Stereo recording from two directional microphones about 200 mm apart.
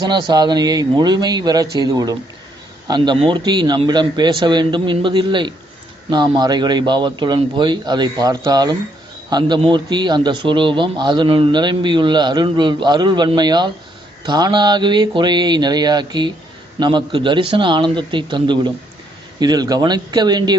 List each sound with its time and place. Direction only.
0.0 s a man's voice: 20° right (ahead or behind)